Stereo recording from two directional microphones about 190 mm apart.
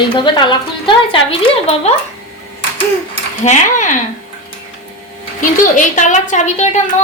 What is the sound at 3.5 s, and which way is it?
Speech, 40° left (ahead or behind).